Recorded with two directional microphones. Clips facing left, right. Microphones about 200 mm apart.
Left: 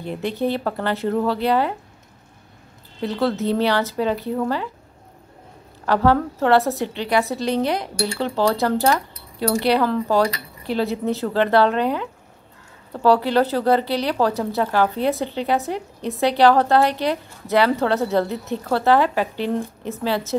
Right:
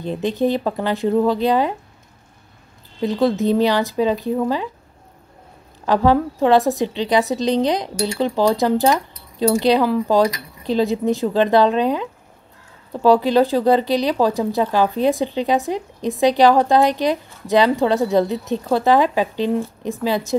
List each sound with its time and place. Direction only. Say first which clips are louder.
0.0 s speech: right 4 dB; 20° right (ahead or behind)
3.0 s speech: right 4 dB; 15° right (ahead or behind)
5.9 s speech: right 2 dB; 15° right (ahead or behind)